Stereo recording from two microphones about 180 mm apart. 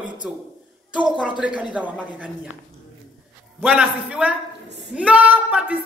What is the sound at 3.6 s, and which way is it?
A woman's voice, 5° right (ahead or behind).